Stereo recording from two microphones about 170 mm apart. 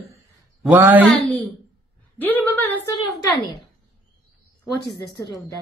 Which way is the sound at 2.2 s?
10° left (ahead or behind).